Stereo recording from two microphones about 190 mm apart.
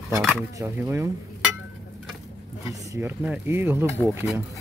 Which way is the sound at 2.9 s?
10° right (ahead or behind).